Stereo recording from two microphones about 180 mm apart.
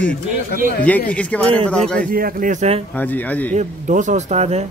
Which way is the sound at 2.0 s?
55° right (ahead or behind).